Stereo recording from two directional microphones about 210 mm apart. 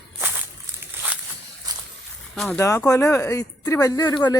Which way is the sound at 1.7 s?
20° right (ahead or behind).